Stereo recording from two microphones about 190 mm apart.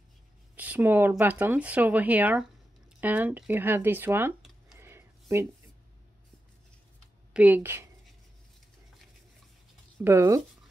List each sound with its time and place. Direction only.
0.6 s speech: 10° right (ahead or behind)
4.7 s a sound: 15° right (ahead or behind)
7.3 s speech: 10° right (ahead or behind)
10.0 s speech: 15° right (ahead or behind)